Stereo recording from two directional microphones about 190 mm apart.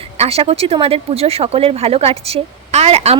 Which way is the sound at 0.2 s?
30° right (ahead or behind).